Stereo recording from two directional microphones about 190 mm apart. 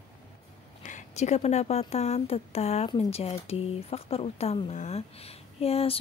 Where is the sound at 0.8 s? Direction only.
40° left (ahead or behind).